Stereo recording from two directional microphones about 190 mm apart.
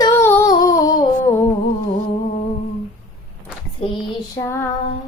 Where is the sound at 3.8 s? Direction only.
30° left (ahead or behind).